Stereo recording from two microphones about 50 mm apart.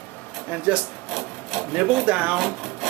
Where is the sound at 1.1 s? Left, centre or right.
Centre.